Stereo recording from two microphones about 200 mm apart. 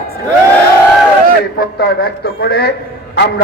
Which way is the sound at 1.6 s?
50° left (ahead or behind).